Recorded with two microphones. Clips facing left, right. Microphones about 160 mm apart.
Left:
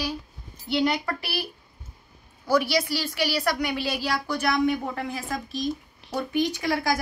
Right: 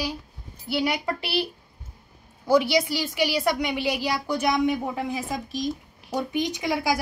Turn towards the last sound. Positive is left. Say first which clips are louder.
# even
turn(degrees=-15)  # may be behind; listen again after turning